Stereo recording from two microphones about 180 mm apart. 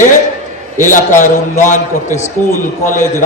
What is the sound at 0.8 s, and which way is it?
A man's voice, 45° left (ahead or behind).